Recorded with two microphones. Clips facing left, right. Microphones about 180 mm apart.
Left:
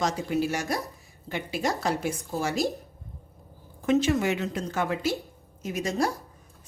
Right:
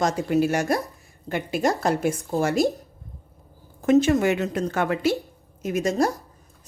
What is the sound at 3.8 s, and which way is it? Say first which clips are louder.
A woman's voice: right 5 dB; 45° right (ahead or behind).